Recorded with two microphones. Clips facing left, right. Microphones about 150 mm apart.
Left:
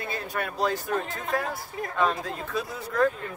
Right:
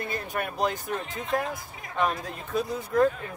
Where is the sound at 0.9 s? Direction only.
45° left (ahead or behind).